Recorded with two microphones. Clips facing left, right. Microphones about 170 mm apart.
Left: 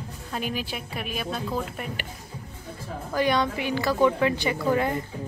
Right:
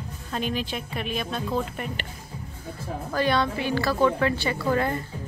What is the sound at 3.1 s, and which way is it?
A woman's voice, 15° left (ahead or behind).